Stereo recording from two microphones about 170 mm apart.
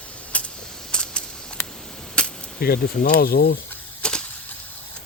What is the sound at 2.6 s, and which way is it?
Speech, 65° left (ahead or behind).